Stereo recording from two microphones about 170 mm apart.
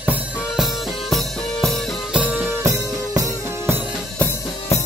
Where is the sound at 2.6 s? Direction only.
20° right (ahead or behind).